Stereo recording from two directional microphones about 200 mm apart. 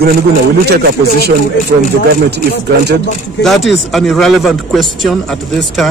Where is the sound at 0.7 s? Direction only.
50° right (ahead or behind).